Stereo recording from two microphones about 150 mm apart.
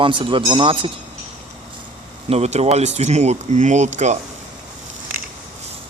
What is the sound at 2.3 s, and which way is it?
Speech, 45° right (ahead or behind).